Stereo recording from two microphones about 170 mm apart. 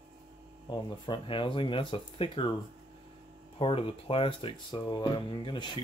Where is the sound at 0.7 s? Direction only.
30° left (ahead or behind).